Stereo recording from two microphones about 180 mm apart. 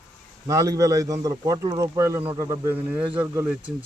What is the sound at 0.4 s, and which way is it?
Speech, 20° right (ahead or behind).